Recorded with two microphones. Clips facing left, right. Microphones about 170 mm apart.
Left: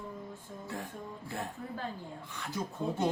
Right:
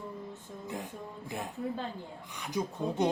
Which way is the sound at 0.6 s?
15° right (ahead or behind).